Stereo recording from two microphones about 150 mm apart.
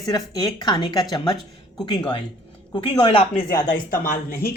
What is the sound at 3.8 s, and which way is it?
Speech, 70° left (ahead or behind).